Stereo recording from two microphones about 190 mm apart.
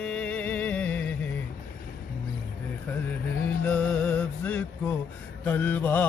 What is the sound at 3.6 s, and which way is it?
Music, 5° left (ahead or behind).